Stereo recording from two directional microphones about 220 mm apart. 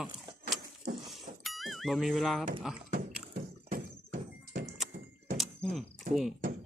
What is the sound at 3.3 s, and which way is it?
Horse, 40° right (ahead or behind).